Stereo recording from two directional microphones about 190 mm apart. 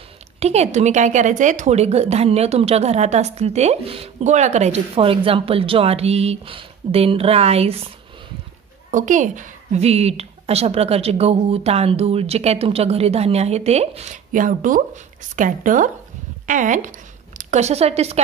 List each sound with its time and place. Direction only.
0.4 s a woman's voice: 35° right (ahead or behind)
8.9 s a woman's voice: 40° right (ahead or behind)